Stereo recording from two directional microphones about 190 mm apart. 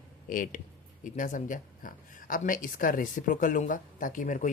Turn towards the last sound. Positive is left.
turn(degrees=40)  # may be behind; listen again after turning